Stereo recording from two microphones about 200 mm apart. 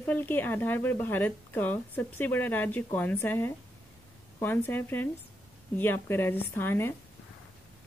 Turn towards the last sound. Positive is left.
turn(degrees=10)  # may be behind; listen again after turning